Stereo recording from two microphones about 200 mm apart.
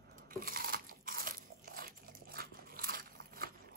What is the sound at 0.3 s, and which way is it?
Crunch, 45° right (ahead or behind).